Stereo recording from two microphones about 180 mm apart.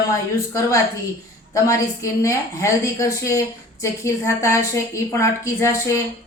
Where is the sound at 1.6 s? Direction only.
15° left (ahead or behind).